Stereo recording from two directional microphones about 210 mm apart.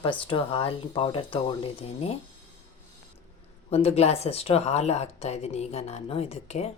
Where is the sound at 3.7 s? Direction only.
30° left (ahead or behind).